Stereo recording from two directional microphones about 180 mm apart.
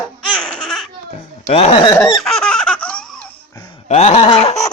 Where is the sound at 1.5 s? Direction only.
35° left (ahead or behind).